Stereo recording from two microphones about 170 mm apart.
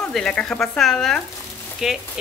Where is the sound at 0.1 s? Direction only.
5° left (ahead or behind).